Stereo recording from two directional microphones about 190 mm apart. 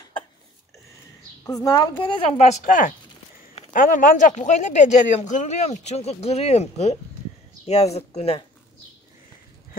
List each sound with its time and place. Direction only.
1.4 s a woman's voice: 15° left (ahead or behind); by 8.5 s 35° left (ahead or behind)